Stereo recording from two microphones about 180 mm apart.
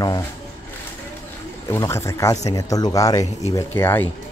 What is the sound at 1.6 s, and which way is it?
Speech, 15° left (ahead or behind).